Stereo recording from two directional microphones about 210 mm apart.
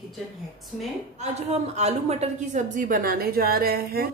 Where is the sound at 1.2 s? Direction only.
30° right (ahead or behind).